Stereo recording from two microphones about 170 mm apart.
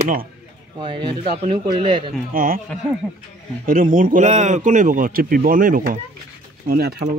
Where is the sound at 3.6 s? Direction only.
55° right (ahead or behind).